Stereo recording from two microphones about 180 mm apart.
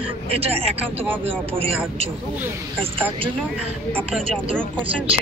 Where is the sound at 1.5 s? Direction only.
30° right (ahead or behind).